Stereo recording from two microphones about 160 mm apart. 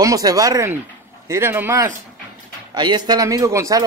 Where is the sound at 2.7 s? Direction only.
25° right (ahead or behind).